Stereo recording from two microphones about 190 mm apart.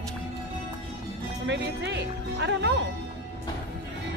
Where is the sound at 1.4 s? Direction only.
70° right (ahead or behind).